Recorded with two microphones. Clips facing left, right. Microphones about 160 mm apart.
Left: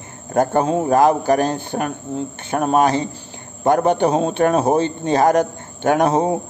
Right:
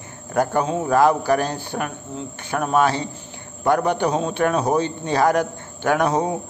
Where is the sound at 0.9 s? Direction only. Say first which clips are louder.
Left 1 dB; 20° left (ahead or behind).